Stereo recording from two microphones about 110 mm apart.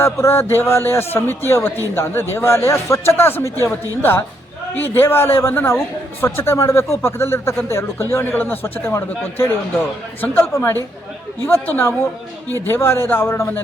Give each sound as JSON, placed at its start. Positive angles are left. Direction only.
{"t": 0.0, "sound": "a man's voice", "side_deg": 20}